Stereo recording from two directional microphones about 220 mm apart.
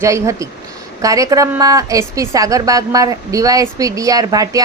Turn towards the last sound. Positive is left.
turn(degrees=-15)  # may be behind; listen again after turning